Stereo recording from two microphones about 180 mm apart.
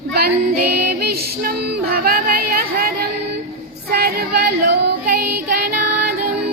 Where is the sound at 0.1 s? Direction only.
60° right (ahead or behind).